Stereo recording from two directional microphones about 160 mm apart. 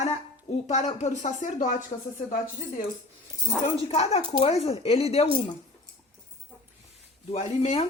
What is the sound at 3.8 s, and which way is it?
Speech, 40° left (ahead or behind).